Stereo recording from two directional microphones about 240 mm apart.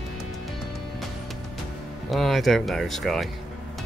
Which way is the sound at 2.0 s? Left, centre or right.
Centre.